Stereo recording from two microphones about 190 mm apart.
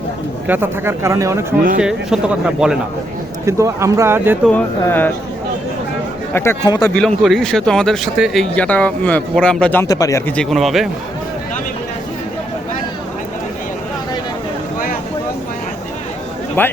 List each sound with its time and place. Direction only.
0.4 s speech: 10° right (ahead or behind)
1.8 s speech: 5° right (ahead or behind)
3.4 s speech: 15° right (ahead or behind)
4.4 s speech: 10° left (ahead or behind)
6.3 s speech: 10° left (ahead or behind)
6.9 s speech: 5° left (ahead or behind)
16.6 s speech: 10° left (ahead or behind)